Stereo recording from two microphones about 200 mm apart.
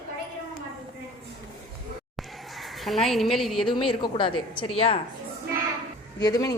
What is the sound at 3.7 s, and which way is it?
A woman's voice, 25° left (ahead or behind).